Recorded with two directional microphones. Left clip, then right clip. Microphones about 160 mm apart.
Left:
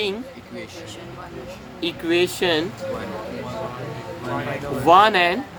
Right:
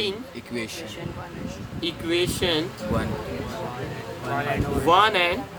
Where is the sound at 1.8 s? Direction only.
65° left (ahead or behind).